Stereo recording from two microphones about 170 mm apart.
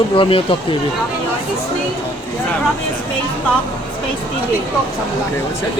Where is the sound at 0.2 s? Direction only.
30° left (ahead or behind).